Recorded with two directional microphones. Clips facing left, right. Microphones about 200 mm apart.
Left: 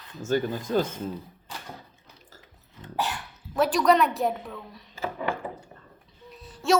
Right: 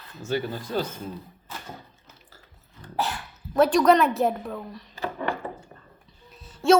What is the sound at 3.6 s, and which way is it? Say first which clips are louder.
Speech: right 3 dB; centre (ahead or behind).